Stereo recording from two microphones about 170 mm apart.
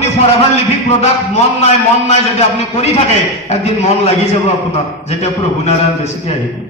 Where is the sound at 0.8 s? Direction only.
40° left (ahead or behind).